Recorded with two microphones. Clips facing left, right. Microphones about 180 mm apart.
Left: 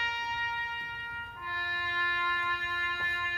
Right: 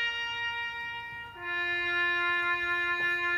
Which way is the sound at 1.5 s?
60° right (ahead or behind).